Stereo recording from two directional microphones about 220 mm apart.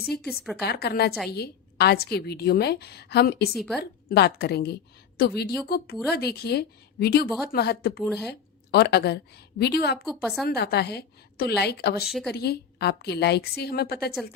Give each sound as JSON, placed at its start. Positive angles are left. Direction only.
{"t": 0.2, "sound": "a woman's voice", "side_deg": 0}
{"t": 0.6, "sound": "a woman's voice", "side_deg": 45}
{"t": 3.5, "sound": "a woman's voice", "side_deg": 0}
{"t": 3.8, "sound": "a woman's voice", "side_deg": 45}
{"t": 8.0, "sound": "a woman's voice", "side_deg": 0}
{"t": 8.3, "sound": "a woman's voice", "side_deg": 50}
{"t": 10.0, "sound": "a woman's voice", "side_deg": 0}
{"t": 10.5, "sound": "a woman's voice", "side_deg": 45}
{"t": 12.0, "sound": "a woman's voice", "side_deg": 0}
{"t": 12.3, "sound": "a woman's voice", "side_deg": 45}